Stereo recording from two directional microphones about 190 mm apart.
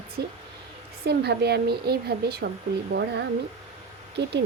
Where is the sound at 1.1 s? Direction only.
60° right (ahead or behind).